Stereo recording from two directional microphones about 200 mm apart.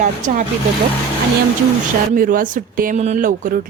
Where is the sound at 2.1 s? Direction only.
45° right (ahead or behind).